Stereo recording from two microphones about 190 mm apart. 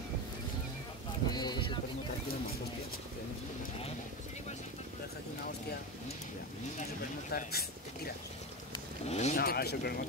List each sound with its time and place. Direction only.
1.3 s a sound: 20° left (ahead or behind)
7.2 s speech: 50° left (ahead or behind)
9.0 s speech: 35° left (ahead or behind)
9.4 s speech: 55° left (ahead or behind)